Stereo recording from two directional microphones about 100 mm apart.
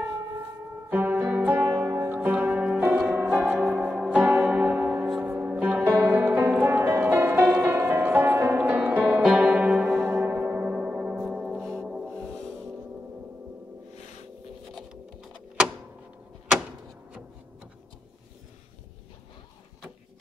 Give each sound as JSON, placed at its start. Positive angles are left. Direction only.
{"t": 0.8, "sound": "music", "side_deg": -20}
{"t": 3.0, "sound": "church bell", "side_deg": -10}
{"t": 3.9, "sound": "music", "side_deg": -10}